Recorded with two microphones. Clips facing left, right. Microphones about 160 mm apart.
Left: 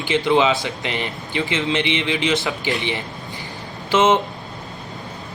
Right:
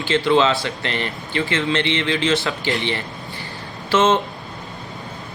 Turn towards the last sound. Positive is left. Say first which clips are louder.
# even
turn(degrees=15)  # may be behind; listen again after turning